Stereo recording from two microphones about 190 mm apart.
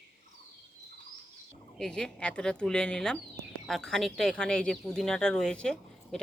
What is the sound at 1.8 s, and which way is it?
Speech, 5° left (ahead or behind).